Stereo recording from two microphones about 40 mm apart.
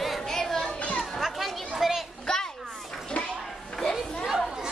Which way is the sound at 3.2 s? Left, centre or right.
Left.